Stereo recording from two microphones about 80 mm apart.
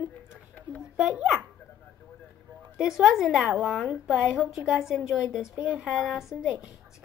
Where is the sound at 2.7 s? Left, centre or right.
Centre.